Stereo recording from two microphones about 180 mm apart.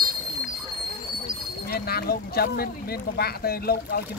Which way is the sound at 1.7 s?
60° left (ahead or behind).